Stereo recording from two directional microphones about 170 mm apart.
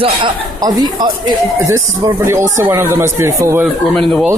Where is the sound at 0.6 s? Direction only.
20° right (ahead or behind).